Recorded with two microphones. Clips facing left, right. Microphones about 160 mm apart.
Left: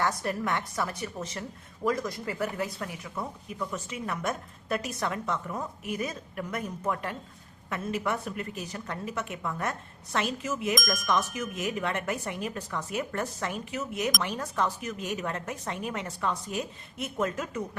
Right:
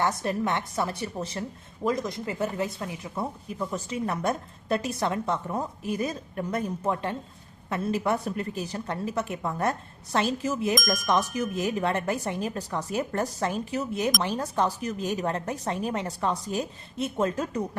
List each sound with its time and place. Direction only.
0.0 s a woman's voice: 25° right (ahead or behind)
10.8 s speech: centre (ahead or behind)
11.3 s a woman's voice: 35° right (ahead or behind)